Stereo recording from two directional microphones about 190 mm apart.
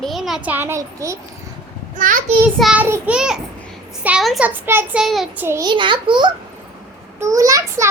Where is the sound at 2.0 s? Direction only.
45° right (ahead or behind).